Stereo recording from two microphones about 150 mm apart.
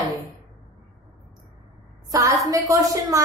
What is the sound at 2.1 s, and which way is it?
A woman's voice, 25° right (ahead or behind).